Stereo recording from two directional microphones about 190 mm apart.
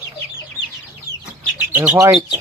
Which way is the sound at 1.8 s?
15° right (ahead or behind).